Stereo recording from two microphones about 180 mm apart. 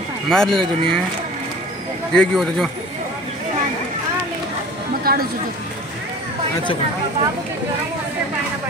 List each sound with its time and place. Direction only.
0.3 s speech: 5° left (ahead or behind)
2.1 s speech: 5° left (ahead or behind)
5.0 s a sound: 55° right (ahead or behind)